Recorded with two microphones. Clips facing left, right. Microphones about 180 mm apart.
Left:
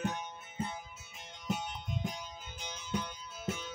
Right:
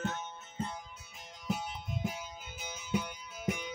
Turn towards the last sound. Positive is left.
turn(degrees=-15)  # may be behind; listen again after turning